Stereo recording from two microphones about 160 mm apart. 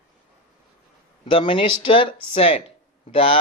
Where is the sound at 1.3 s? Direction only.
35° left (ahead or behind).